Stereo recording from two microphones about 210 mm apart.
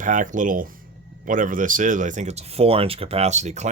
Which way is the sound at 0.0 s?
40° right (ahead or behind).